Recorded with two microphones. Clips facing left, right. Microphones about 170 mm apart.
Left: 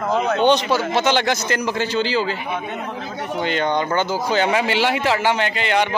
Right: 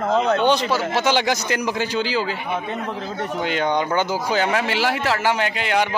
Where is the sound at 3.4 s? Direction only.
10° right (ahead or behind).